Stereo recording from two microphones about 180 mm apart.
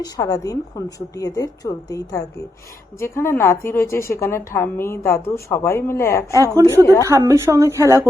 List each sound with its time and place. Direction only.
0.0 s a woman's voice: 20° left (ahead or behind)
6.3 s speech: 15° right (ahead or behind)
6.8 s a woman's voice: 15° left (ahead or behind)
7.1 s speech: 15° right (ahead or behind)